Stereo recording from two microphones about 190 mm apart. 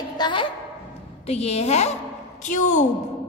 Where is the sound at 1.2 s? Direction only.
35° left (ahead or behind).